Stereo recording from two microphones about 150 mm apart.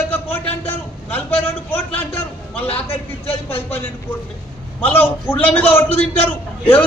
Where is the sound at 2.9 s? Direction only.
40° left (ahead or behind).